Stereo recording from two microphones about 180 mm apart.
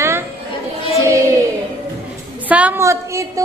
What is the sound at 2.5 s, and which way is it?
Speech, 10° right (ahead or behind).